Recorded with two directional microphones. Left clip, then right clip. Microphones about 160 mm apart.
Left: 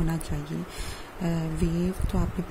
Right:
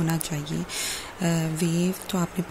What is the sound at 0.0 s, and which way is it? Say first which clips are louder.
Speech: right 4 dB; 5° left (ahead or behind).